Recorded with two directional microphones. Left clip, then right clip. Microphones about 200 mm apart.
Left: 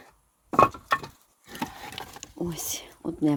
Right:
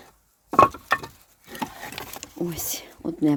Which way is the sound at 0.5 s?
45° right (ahead or behind).